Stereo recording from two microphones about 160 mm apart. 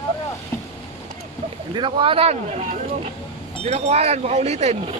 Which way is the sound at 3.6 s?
40° right (ahead or behind).